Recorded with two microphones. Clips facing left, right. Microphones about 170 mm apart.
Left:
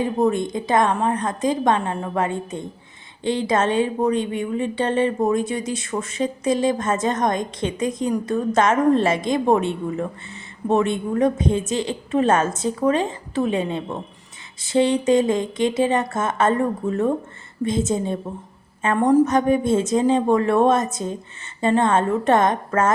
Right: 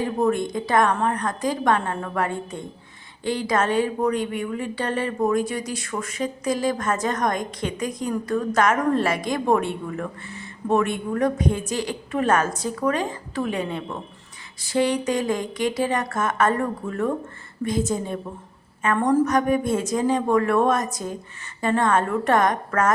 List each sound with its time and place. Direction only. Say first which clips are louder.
0.0 s a woman's voice: left 2 dB; 20° left (ahead or behind)